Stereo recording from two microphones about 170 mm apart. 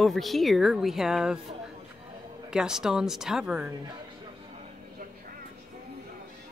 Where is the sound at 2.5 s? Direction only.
5° right (ahead or behind).